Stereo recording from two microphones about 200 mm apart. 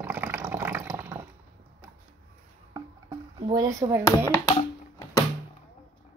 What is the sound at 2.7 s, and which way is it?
Music, 20° right (ahead or behind).